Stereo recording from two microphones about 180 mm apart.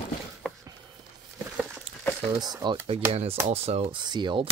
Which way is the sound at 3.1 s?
35° right (ahead or behind).